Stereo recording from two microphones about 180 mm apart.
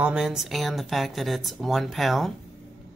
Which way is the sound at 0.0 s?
5° right (ahead or behind).